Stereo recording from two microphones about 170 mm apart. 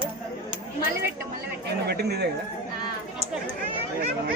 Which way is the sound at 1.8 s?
75° right (ahead or behind).